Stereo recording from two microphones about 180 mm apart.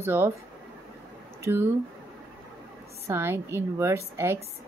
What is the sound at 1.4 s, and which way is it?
Speech, 15° right (ahead or behind).